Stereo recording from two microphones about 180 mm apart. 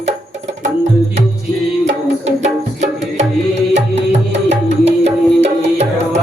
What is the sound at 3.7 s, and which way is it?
Music, 40° right (ahead or behind).